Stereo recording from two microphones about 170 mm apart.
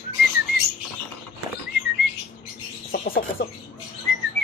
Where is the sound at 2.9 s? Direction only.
55° left (ahead or behind).